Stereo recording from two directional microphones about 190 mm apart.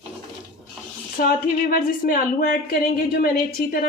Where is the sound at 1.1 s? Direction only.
50° left (ahead or behind).